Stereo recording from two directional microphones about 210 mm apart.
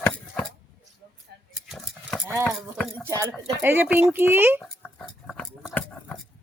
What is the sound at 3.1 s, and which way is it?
Speech, 15° right (ahead or behind).